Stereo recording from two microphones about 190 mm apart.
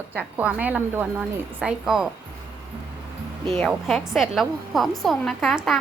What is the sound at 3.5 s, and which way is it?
A woman's voice, centre (ahead or behind).